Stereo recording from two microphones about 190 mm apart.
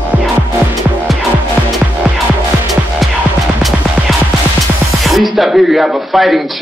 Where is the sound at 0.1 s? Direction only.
10° right (ahead or behind).